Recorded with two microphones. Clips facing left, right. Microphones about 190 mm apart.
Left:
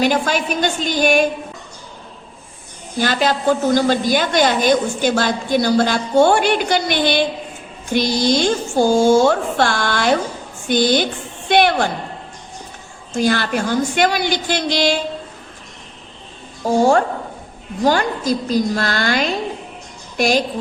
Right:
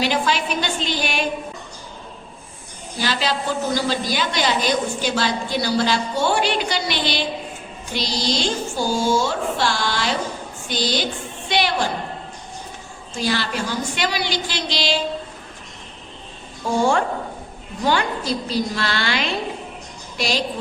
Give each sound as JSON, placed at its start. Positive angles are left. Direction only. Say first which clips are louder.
{"t": 0.0, "sound": "a woman's voice", "louder": "left 4 dB", "side_deg": 50}
{"t": 3.0, "sound": "a woman's voice", "louder": "left 6 dB", "side_deg": 50}
{"t": 13.1, "sound": "a woman's voice", "louder": "left 6 dB", "side_deg": 50}
{"t": 16.6, "sound": "a woman's voice", "louder": "left 5 dB", "side_deg": 40}